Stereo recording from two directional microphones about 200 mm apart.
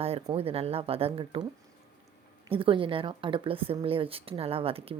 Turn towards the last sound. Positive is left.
turn(degrees=-30)  # may be behind; listen again after turning